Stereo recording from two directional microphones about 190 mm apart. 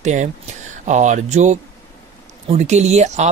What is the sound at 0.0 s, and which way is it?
Speech, 40° right (ahead or behind).